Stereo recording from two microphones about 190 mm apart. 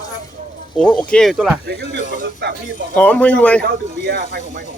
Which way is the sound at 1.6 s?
65° right (ahead or behind).